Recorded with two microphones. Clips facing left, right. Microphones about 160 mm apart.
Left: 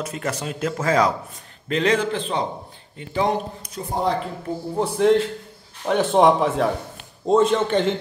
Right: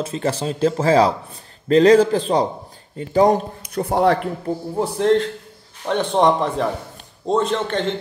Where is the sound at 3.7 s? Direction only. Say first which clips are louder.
Right 6 dB; 70° right (ahead or behind).